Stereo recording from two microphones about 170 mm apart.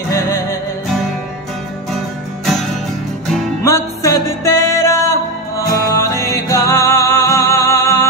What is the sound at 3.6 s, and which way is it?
Music, 20° left (ahead or behind).